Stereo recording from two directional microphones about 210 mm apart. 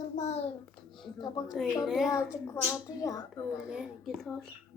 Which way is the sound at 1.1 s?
20° left (ahead or behind).